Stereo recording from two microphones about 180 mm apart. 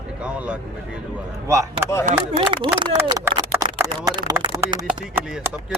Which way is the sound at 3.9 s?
25° right (ahead or behind).